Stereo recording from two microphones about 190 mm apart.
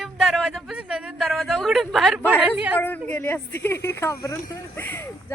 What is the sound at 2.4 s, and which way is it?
Speech, 10° right (ahead or behind).